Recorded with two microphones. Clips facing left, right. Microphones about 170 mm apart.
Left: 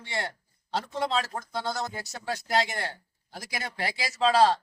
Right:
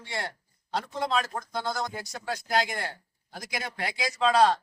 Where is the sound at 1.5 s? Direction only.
Centre (ahead or behind).